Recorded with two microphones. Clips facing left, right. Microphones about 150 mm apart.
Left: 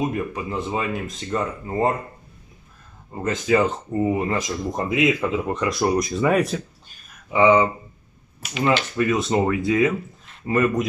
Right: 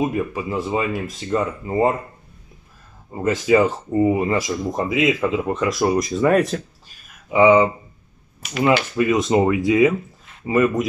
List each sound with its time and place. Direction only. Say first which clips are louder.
0.0 s speech: right 3 dB; 5° right (ahead or behind)
3.1 s speech: right 4 dB; 5° right (ahead or behind)
7.2 s speech: right 3 dB; 10° right (ahead or behind)
8.6 s speech: right 3 dB; 10° right (ahead or behind)